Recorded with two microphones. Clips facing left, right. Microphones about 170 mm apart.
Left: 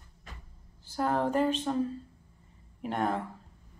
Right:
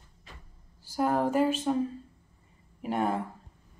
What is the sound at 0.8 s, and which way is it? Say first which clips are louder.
Speech: right 2 dB; 10° right (ahead or behind).